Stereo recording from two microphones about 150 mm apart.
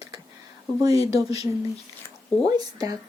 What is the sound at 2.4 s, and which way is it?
Speech, 25° right (ahead or behind).